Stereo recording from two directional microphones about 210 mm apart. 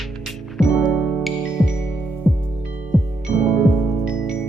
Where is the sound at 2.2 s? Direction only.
10° left (ahead or behind).